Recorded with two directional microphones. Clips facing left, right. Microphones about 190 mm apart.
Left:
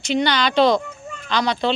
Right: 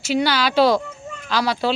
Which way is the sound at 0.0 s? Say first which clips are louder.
Even; 5° right (ahead or behind).